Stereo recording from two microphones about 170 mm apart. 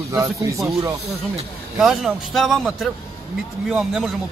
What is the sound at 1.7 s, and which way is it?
A man's voice, centre (ahead or behind).